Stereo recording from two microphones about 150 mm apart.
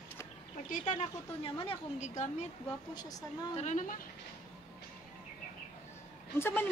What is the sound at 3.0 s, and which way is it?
Speech, 25° left (ahead or behind).